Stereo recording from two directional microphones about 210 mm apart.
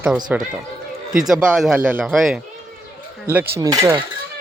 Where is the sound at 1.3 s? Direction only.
5° right (ahead or behind).